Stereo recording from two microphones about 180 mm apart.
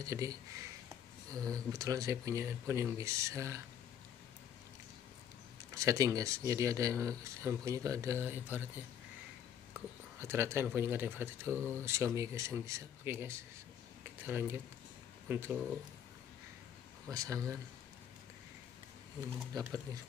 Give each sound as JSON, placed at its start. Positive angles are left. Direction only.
{"t": 0.0, "sound": "speech", "side_deg": -20}
{"t": 1.5, "sound": "speech", "side_deg": -20}
{"t": 5.8, "sound": "speech", "side_deg": -20}
{"t": 17.1, "sound": "speech", "side_deg": -20}
{"t": 19.6, "sound": "speech", "side_deg": -20}